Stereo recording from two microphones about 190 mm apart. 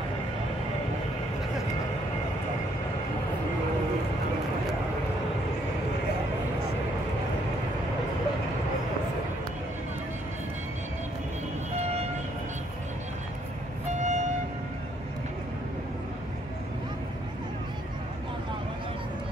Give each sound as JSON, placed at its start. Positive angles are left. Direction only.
{"t": 11.7, "sound": "vehicle", "side_deg": -35}
{"t": 13.8, "sound": "vehicle", "side_deg": -40}